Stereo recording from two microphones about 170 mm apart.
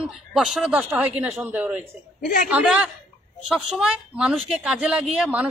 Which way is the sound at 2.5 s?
10° right (ahead or behind).